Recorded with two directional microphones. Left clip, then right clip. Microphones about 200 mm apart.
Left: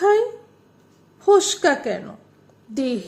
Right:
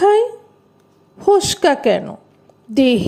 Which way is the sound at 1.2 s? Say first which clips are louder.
Right 3 dB; 30° right (ahead or behind).